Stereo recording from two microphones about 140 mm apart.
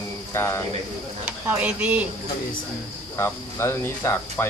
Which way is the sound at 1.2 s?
10° right (ahead or behind).